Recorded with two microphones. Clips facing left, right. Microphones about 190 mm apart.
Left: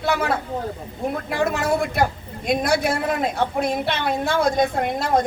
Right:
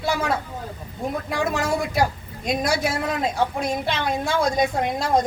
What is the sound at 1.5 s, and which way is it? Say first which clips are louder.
Speech: even; 55° left (ahead or behind).